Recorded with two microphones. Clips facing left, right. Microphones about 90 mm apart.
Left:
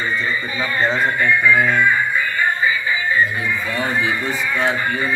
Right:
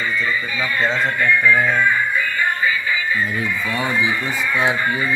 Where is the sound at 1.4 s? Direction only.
5° left (ahead or behind).